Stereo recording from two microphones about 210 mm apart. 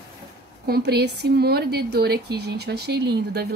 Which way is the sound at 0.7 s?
50° right (ahead or behind).